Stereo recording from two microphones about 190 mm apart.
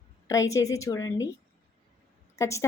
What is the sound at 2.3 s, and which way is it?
Speech, 15° left (ahead or behind).